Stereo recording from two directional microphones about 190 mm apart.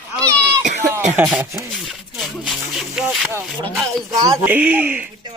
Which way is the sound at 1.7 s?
Centre (ahead or behind).